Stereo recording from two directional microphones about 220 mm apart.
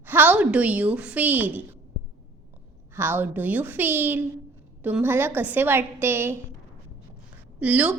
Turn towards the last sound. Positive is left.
turn(degrees=-5)  # may be behind; listen again after turning